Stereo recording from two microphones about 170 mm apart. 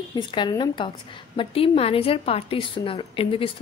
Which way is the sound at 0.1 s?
25° left (ahead or behind).